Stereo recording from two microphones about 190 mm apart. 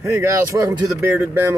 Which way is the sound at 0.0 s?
15° right (ahead or behind).